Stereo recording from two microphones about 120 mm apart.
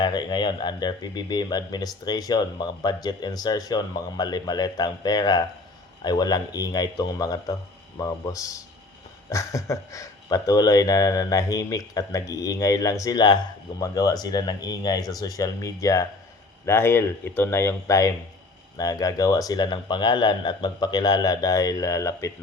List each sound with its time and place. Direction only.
0.0 s speech: 35° left (ahead or behind)